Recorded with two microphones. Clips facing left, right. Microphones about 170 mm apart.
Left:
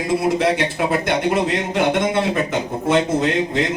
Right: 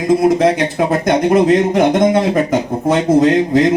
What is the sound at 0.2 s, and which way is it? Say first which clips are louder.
A man's voice: right 6 dB; 40° right (ahead or behind).